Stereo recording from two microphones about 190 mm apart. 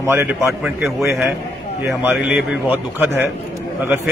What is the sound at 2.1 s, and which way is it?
A man's voice, 5° right (ahead or behind).